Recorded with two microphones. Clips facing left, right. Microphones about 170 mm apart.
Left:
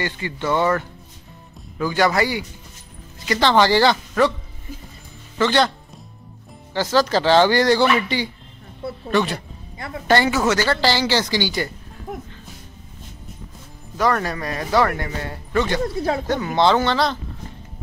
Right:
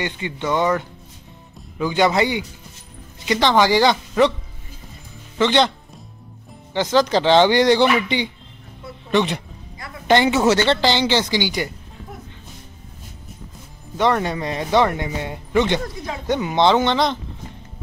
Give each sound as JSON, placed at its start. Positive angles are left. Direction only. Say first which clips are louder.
{"t": 0.0, "sound": "speech", "louder": "even", "side_deg": -15}
{"t": 5.4, "sound": "speech", "louder": "right 1 dB", "side_deg": -20}
{"t": 6.7, "sound": "speech", "louder": "right 1 dB", "side_deg": -20}
{"t": 13.9, "sound": "speech", "louder": "right 2 dB", "side_deg": -20}